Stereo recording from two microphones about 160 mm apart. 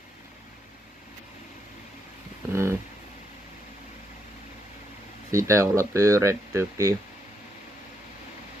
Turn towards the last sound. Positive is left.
turn(degrees=-20)  # may be behind; listen again after turning